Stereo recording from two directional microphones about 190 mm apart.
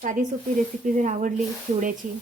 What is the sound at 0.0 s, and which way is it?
A woman's voice, 45° right (ahead or behind).